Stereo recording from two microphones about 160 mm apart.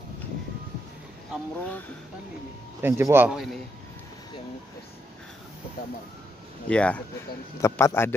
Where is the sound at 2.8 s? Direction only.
15° right (ahead or behind).